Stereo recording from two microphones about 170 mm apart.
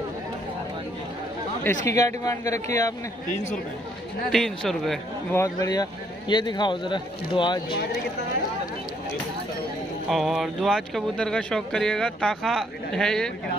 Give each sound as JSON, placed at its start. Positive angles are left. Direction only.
{"t": 1.9, "sound": "speech", "side_deg": 20}
{"t": 4.3, "sound": "speech", "side_deg": 0}
{"t": 5.3, "sound": "speech", "side_deg": 20}
{"t": 10.0, "sound": "speech", "side_deg": 0}